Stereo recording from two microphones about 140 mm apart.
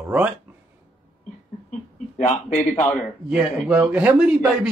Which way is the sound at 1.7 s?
60° left (ahead or behind).